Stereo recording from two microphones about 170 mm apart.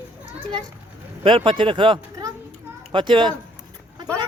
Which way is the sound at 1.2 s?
30° right (ahead or behind).